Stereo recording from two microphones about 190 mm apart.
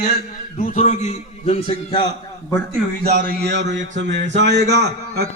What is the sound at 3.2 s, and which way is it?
Speech, 65° right (ahead or behind).